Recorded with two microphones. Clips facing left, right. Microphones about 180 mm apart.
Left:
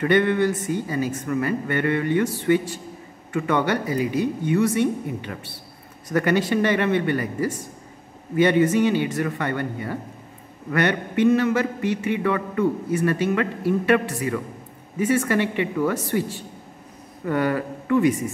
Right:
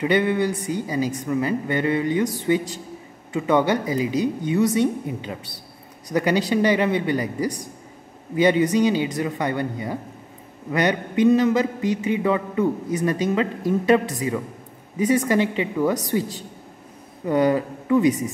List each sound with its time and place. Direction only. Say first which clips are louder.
0.0 s a man's voice: left 1 dB; 10° right (ahead or behind)
6.1 s a man's voice: even; 15° right (ahead or behind)
17.2 s a man's voice: right 3 dB; 15° right (ahead or behind)